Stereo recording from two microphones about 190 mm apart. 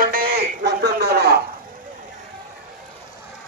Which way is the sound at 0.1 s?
50° right (ahead or behind).